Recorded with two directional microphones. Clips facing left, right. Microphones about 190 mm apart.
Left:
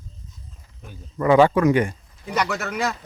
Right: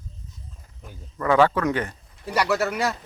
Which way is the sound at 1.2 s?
15° left (ahead or behind).